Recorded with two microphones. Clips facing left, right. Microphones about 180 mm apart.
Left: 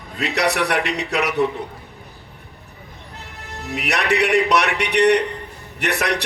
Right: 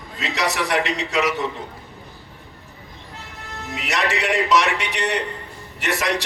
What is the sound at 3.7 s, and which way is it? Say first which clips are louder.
A man's voice: left 4 dB; 60° left (ahead or behind).